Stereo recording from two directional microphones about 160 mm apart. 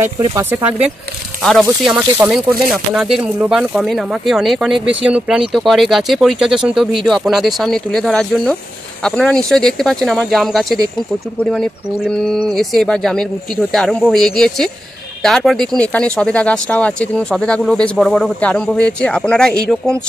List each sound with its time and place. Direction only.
0.0 s speech: 15° right (ahead or behind)
1.4 s speech: centre (ahead or behind)